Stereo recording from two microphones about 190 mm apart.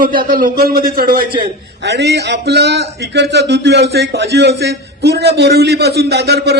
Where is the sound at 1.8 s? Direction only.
65° right (ahead or behind).